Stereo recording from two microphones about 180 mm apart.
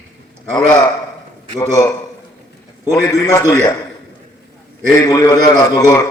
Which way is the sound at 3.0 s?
20° left (ahead or behind).